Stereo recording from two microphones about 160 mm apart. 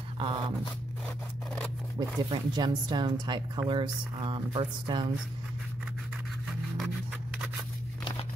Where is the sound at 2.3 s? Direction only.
25° right (ahead or behind).